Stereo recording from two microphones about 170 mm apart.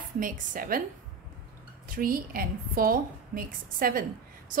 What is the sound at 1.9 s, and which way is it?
A woman's voice, 55° right (ahead or behind).